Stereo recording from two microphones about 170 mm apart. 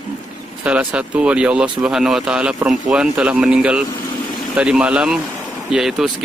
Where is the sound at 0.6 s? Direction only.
10° right (ahead or behind).